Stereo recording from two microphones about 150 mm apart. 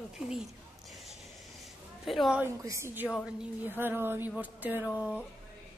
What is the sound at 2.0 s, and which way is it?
Speech, centre (ahead or behind).